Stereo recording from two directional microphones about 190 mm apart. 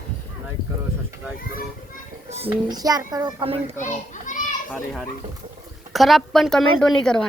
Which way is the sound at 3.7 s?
40° left (ahead or behind).